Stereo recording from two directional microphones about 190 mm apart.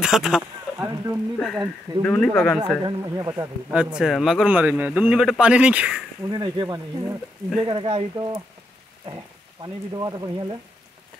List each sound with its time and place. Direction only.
0.0 s a sound: centre (ahead or behind)
1.4 s speech: centre (ahead or behind)
2.8 s speech: 20° right (ahead or behind)
3.7 s speech: 5° right (ahead or behind)
6.2 s speech: 20° right (ahead or behind)